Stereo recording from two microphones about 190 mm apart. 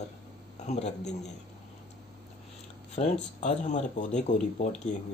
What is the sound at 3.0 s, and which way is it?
Speech, 40° left (ahead or behind).